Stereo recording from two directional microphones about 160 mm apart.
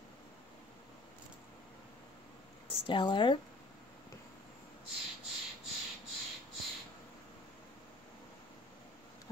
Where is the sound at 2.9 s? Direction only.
30° left (ahead or behind).